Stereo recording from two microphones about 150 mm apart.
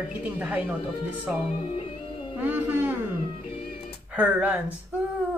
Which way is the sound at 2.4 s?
10° right (ahead or behind).